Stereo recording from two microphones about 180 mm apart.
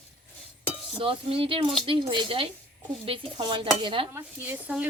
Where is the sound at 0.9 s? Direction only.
30° right (ahead or behind).